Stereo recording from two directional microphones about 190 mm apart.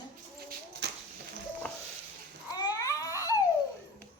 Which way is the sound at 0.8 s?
65° right (ahead or behind).